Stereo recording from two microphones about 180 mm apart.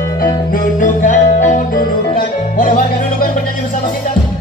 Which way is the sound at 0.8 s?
45° left (ahead or behind).